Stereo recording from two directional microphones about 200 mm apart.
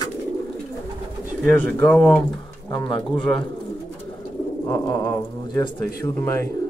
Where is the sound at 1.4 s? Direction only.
5° left (ahead or behind).